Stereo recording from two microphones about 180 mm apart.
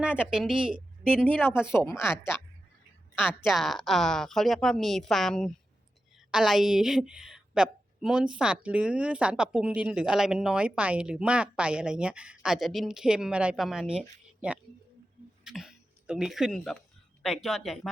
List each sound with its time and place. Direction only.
0.0 s a woman's voice: 5° right (ahead or behind)
3.2 s a woman's voice: centre (ahead or behind)
15.4 s a woman's voice: centre (ahead or behind)